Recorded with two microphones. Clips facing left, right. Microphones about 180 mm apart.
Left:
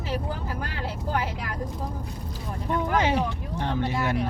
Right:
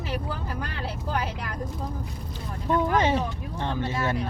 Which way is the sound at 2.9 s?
10° left (ahead or behind).